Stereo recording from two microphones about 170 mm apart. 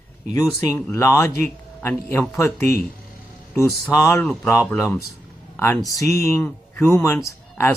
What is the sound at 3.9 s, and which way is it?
Speech, 15° left (ahead or behind).